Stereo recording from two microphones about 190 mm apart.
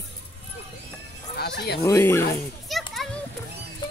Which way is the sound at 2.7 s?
Centre (ahead or behind).